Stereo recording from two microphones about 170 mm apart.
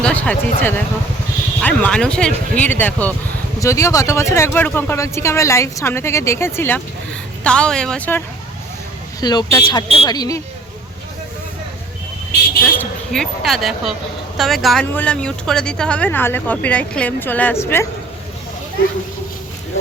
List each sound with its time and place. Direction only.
0.0 s speech: 10° left (ahead or behind)
9.2 s speech: 25° left (ahead or behind)
12.8 s speech: centre (ahead or behind)